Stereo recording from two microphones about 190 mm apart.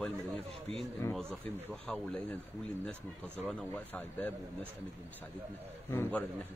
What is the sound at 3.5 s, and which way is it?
A man's voice, 5° left (ahead or behind).